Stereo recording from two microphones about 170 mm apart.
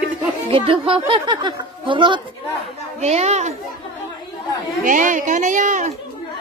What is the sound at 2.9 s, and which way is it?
Speech, 40° right (ahead or behind).